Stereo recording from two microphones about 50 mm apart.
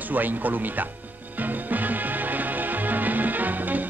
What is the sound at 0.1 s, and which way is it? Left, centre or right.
Speech, right.